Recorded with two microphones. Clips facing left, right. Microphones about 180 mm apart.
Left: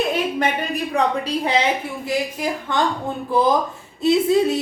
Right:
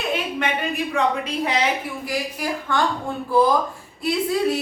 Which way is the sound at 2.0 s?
20° left (ahead or behind).